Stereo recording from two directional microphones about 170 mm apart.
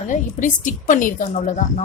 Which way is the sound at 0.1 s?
50° left (ahead or behind).